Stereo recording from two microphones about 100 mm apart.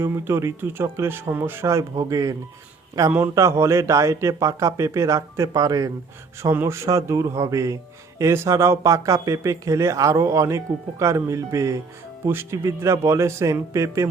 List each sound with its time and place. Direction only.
0.0 s a man's voice: 25° right (ahead or behind)
6.4 s a man's voice: 25° right (ahead or behind)